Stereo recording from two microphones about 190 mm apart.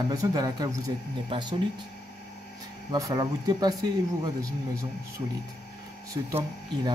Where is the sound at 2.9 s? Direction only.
20° right (ahead or behind).